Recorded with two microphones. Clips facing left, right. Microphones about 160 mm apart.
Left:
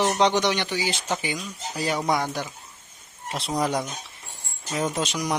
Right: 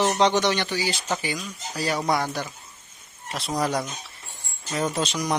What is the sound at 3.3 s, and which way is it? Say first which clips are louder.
Speech: even; 25° left (ahead or behind).